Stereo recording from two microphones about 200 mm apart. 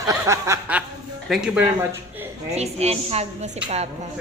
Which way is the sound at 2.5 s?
30° right (ahead or behind).